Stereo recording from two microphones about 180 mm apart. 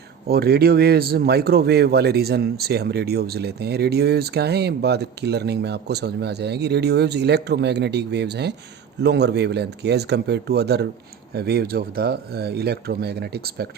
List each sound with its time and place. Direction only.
0.3 s speech: 60° right (ahead or behind)